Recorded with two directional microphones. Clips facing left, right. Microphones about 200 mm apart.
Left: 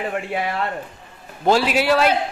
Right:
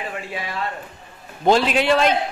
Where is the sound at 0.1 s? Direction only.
60° left (ahead or behind).